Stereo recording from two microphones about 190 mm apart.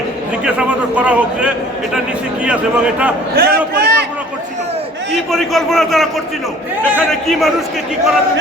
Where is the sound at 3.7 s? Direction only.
60° right (ahead or behind).